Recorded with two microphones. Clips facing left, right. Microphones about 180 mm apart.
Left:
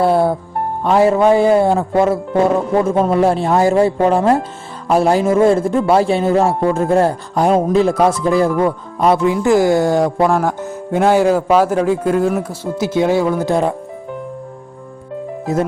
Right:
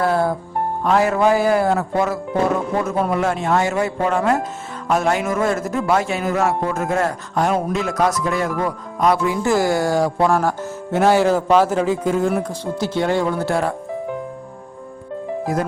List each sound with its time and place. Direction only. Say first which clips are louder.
0.9 s a man's voice: left 5 dB; 25° left (ahead or behind)
15.5 s speech: left 5 dB; 25° left (ahead or behind)